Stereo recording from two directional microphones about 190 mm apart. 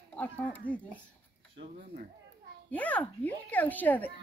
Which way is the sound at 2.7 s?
10° left (ahead or behind).